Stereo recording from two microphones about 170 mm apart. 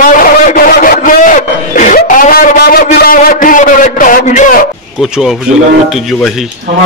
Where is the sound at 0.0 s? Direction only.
55° left (ahead or behind).